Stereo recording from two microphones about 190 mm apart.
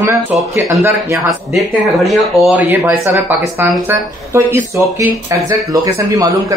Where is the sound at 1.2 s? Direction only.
Centre (ahead or behind); by 6.5 s 20° right (ahead or behind).